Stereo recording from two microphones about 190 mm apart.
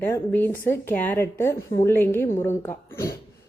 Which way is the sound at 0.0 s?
10° left (ahead or behind).